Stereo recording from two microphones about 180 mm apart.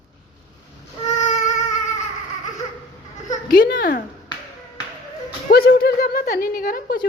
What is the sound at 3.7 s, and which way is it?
Speech, 55° left (ahead or behind).